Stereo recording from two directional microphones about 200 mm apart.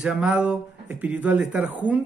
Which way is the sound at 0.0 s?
5° right (ahead or behind).